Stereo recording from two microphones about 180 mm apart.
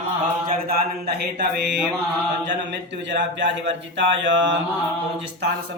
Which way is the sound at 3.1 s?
85° right.